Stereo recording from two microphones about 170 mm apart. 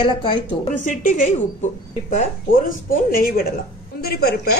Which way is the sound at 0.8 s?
50° left (ahead or behind).